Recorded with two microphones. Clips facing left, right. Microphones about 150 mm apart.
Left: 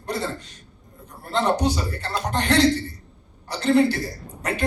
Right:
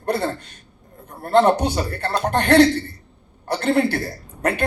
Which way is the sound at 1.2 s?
55° right (ahead or behind).